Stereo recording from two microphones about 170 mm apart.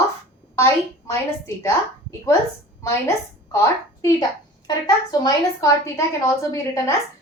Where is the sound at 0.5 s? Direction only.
15° left (ahead or behind).